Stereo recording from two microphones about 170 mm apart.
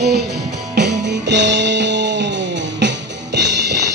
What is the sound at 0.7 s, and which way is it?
Music, 85° right.